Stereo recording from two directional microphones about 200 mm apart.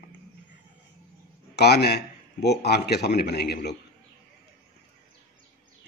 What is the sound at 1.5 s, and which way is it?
A man's voice, 55° left (ahead or behind).